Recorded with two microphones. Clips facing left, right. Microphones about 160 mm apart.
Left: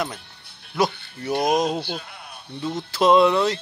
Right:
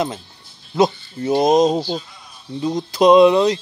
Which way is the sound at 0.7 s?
20° right (ahead or behind).